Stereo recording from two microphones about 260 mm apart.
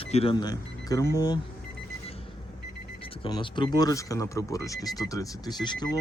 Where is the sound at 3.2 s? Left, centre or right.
Centre.